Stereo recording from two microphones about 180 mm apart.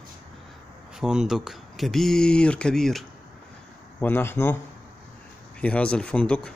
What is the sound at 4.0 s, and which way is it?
Speech, 10° left (ahead or behind).